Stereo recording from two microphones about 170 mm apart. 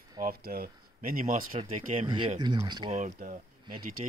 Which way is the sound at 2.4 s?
25° right (ahead or behind).